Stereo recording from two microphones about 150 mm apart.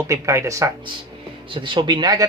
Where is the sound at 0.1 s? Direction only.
20° right (ahead or behind).